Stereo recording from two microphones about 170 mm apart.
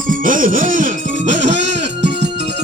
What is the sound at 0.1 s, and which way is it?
Music, 50° right (ahead or behind).